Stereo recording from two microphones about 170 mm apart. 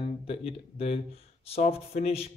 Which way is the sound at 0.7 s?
35° left (ahead or behind).